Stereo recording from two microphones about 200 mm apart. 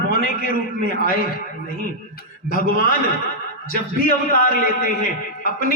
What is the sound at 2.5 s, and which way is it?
Speech, 45° left (ahead or behind).